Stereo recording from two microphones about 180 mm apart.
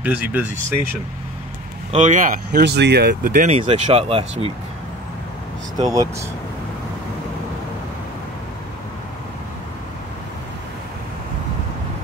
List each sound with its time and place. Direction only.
0.0 s speech: 10° right (ahead or behind)
1.9 s speech: 40° right (ahead or behind); by 3.4 s 60° right (ahead or behind)
3.4 s speech: 40° right (ahead or behind)
5.8 s speech: 20° right (ahead or behind)